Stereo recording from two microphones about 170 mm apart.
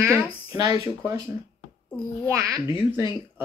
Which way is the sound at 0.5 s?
20° right (ahead or behind).